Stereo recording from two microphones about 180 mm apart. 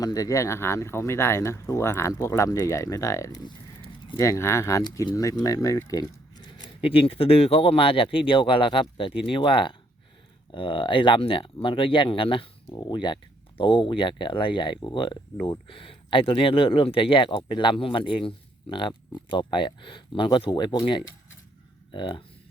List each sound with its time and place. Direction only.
0.0 s speech: 20° left (ahead or behind)
4.2 s speech: 15° left (ahead or behind)